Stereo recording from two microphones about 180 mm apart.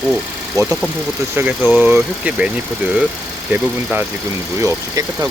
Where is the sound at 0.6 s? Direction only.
5° right (ahead or behind).